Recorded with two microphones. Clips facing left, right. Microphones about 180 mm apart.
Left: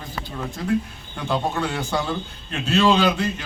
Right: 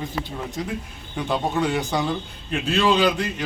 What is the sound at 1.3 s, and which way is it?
A man's voice, 15° right (ahead or behind).